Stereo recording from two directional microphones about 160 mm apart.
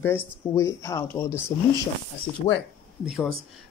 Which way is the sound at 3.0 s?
5° right (ahead or behind).